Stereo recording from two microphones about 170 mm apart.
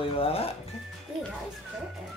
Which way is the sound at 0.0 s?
35° left (ahead or behind).